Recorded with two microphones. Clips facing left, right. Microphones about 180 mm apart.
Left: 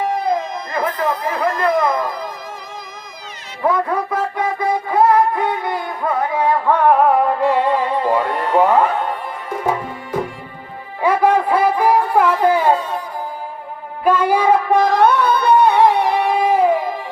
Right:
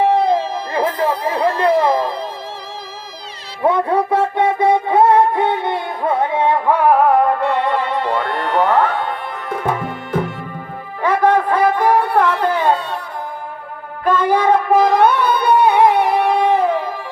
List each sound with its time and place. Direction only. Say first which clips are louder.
0.0 s a sound: right 5 dB; 30° right (ahead or behind)
3.6 s music: right 3 dB; 25° right (ahead or behind)
6.7 s music: even; 10° right (ahead or behind)
7.6 s music: left 1 dB; 70° right (ahead or behind)
8.6 s music: left 1 dB; 10° left (ahead or behind)
9.6 s music: left 1 dB; 60° right (ahead or behind)
11.0 s music: even; 10° left (ahead or behind)
14.0 s music: even; 10° left (ahead or behind)
15.0 s music: even; 10° right (ahead or behind)
15.9 s music: right 1 dB; 55° right (ahead or behind)
16.2 s music: even; 10° left (ahead or behind)